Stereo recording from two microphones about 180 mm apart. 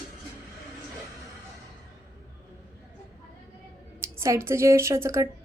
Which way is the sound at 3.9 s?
15° right (ahead or behind).